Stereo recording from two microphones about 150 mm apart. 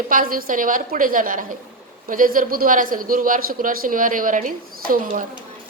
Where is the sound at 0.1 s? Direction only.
70° right (ahead or behind).